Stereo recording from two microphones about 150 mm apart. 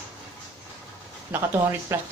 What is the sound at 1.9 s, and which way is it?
Speech, 15° right (ahead or behind).